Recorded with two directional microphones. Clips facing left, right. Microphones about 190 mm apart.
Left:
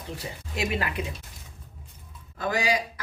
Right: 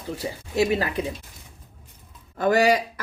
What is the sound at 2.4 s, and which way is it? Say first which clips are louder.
Speech: right 7 dB; 55° right (ahead or behind).